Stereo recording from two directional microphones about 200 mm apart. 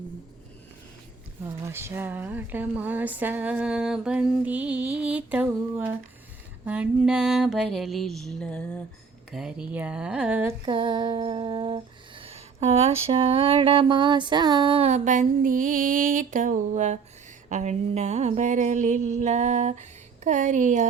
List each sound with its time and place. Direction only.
1.5 s speech: 15° right (ahead or behind)
6.7 s mantra: 5° right (ahead or behind)
10.7 s a sound: 25° right (ahead or behind)